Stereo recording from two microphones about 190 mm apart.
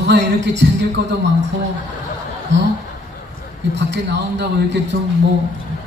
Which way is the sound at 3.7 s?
65° right (ahead or behind).